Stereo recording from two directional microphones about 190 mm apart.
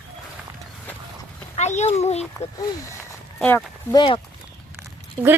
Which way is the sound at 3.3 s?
10° left (ahead or behind).